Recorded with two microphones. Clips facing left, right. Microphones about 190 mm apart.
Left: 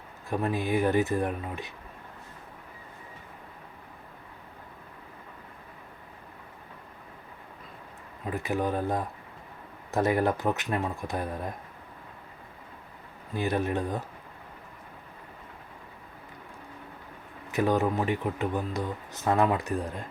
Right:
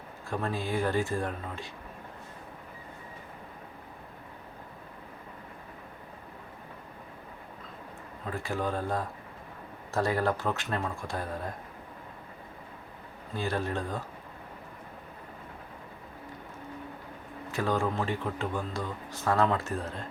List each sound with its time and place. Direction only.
0.3 s speech: 20° left (ahead or behind)
8.3 s speech: 20° left (ahead or behind)
13.3 s speech: 20° left (ahead or behind)
17.5 s speech: 20° left (ahead or behind)